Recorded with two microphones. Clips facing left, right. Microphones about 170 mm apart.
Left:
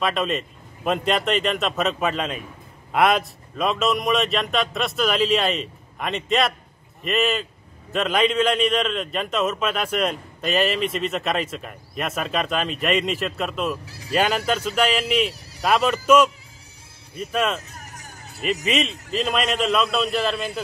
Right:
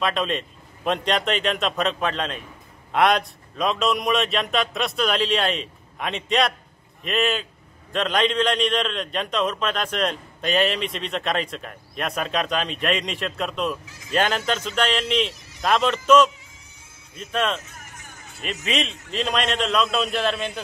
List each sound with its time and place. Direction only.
0.0 s a man's voice: centre (ahead or behind)
13.8 s vehicle: 35° left (ahead or behind)
14.1 s speech: 5° left (ahead or behind)
17.6 s hubbub: 35° left (ahead or behind)
18.4 s a man's voice: centre (ahead or behind)